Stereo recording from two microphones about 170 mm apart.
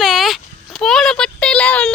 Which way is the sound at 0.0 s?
Centre (ahead or behind).